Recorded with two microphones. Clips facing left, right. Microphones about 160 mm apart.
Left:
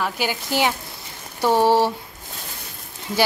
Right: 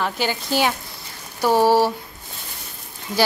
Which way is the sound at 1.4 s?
10° right (ahead or behind).